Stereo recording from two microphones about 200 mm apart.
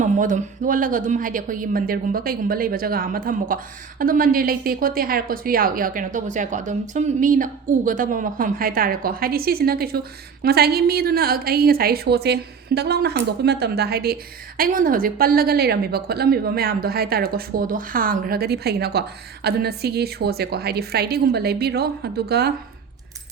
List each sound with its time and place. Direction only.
0.0 s speech: 40° right (ahead or behind)